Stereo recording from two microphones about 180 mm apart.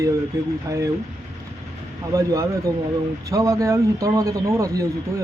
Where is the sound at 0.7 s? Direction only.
20° right (ahead or behind).